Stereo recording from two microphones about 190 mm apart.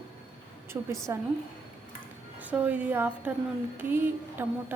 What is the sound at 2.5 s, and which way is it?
A woman's voice, 10° right (ahead or behind).